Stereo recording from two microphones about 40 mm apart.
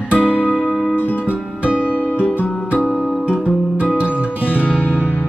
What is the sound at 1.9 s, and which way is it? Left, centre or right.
Music, left.